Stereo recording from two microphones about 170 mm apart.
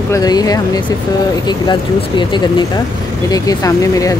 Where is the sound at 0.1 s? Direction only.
20° left (ahead or behind).